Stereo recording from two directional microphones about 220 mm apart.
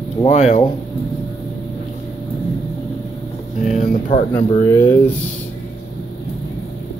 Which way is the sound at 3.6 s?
35° left (ahead or behind).